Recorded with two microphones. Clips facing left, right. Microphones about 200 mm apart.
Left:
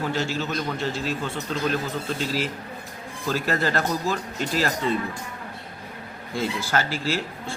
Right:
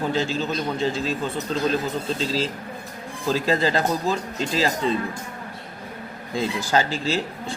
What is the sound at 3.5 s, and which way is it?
Speech, 15° right (ahead or behind).